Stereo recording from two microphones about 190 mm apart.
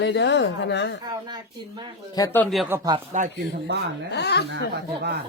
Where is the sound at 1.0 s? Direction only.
20° right (ahead or behind).